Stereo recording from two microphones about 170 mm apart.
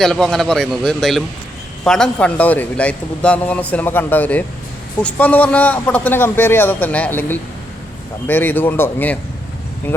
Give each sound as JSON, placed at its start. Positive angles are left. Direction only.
{"t": 0.0, "sound": "a man's voice", "side_deg": 5}